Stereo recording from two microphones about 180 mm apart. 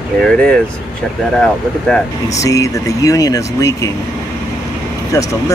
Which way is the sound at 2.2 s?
20° left (ahead or behind).